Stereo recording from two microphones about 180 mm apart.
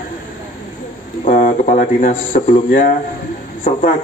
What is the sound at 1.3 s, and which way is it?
A man's voice, 45° left (ahead or behind).